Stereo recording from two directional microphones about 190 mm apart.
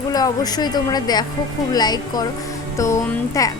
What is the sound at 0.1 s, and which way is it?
A woman's voice, 20° left (ahead or behind).